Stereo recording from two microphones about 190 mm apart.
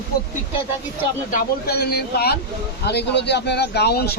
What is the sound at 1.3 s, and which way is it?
Speech, 55° left (ahead or behind).